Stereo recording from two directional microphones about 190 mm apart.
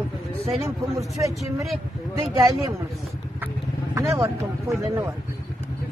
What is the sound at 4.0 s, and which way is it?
Speech, 15° right (ahead or behind).